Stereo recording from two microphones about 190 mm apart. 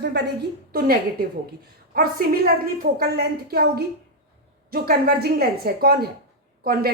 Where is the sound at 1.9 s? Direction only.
50° right (ahead or behind).